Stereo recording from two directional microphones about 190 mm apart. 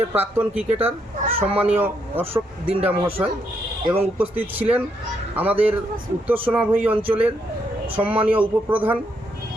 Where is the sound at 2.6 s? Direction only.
30° right (ahead or behind).